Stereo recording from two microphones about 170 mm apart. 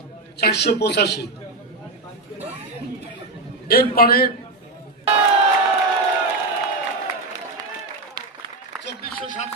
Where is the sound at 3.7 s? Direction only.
65° left (ahead or behind).